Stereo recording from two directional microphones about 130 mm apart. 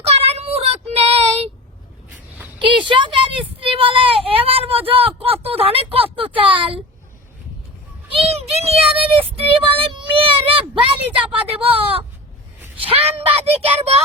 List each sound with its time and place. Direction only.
0.1 s child singing: 55° right (ahead or behind)
2.6 s a sound: 40° right (ahead or behind)
8.4 s child singing: 50° right (ahead or behind)
11.3 s speech: 45° right (ahead or behind)